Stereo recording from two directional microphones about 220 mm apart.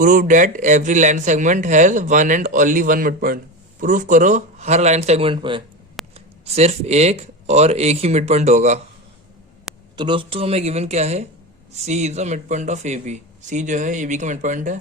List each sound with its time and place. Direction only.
0.0 s speech: 35° right (ahead or behind)
9.9 s speech: 20° right (ahead or behind)